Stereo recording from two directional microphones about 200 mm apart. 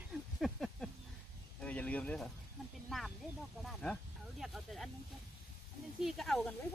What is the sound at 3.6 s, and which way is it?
Snake, 5° left (ahead or behind).